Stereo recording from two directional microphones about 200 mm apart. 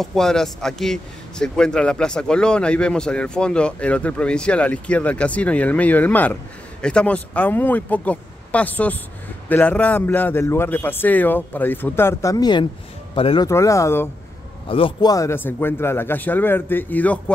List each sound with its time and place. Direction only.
0.0 s a man's voice: centre (ahead or behind); by 13.5 s 25° left (ahead or behind)
13.5 s a man's voice: 15° left (ahead or behind)
14.7 s a man's voice: 25° left (ahead or behind); by 17.2 s 10° left (ahead or behind)